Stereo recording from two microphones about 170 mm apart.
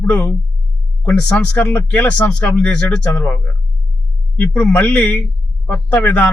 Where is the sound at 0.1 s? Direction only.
10° left (ahead or behind).